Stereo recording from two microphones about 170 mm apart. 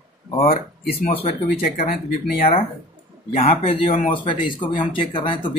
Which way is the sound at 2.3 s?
55° left (ahead or behind).